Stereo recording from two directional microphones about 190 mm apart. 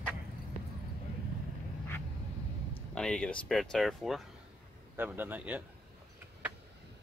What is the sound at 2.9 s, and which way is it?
Speech, 5° left (ahead or behind).